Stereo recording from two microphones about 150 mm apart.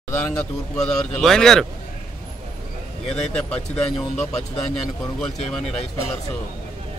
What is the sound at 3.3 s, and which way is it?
Speech, 5° left (ahead or behind).